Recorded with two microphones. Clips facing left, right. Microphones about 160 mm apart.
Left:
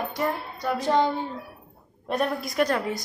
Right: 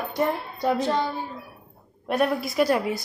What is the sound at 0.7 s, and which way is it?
Speech, 15° left (ahead or behind).